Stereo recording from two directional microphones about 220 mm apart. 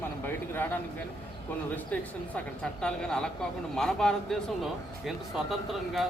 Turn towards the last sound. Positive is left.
turn(degrees=0)  # may be behind; listen again after turning